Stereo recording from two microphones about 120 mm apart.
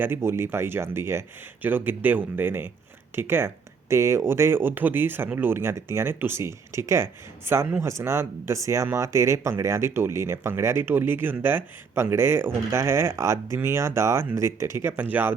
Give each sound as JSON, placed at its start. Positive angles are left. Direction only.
{"t": 0.0, "sound": "speech", "side_deg": -20}